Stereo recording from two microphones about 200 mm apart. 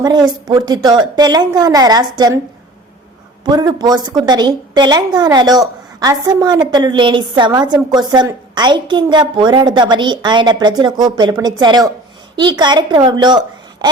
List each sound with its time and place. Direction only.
0.0 s a woman's voice: 20° right (ahead or behind)
3.4 s a woman's voice: 20° right (ahead or behind)